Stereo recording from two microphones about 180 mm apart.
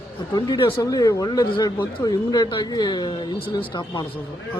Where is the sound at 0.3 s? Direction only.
25° left (ahead or behind).